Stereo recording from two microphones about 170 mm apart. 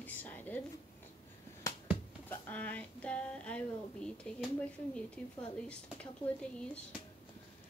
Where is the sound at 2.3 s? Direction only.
10° left (ahead or behind).